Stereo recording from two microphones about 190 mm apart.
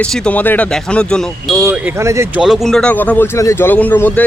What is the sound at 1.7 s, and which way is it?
Speech, 10° right (ahead or behind).